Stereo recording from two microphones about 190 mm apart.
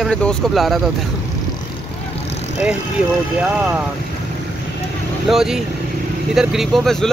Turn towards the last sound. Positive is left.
turn(degrees=0)  # may be behind; listen again after turning